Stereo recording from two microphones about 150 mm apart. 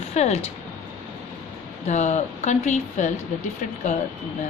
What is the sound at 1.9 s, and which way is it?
Speech, 50° left (ahead or behind).